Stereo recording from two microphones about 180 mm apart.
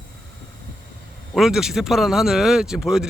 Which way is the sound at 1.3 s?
Centre (ahead or behind).